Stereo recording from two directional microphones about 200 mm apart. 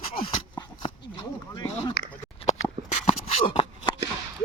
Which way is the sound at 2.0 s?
55° left (ahead or behind).